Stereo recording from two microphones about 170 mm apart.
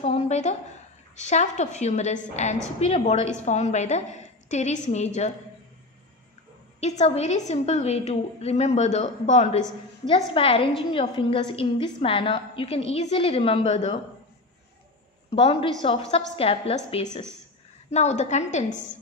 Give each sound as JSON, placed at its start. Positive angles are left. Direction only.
{"t": 0.0, "sound": "a sound", "side_deg": 40}
{"t": 1.1, "sound": "a woman's voice", "side_deg": 45}
{"t": 6.8, "sound": "a woman's voice", "side_deg": 40}
{"t": 10.0, "sound": "a woman's voice", "side_deg": 35}
{"t": 15.3, "sound": "a woman's voice", "side_deg": 35}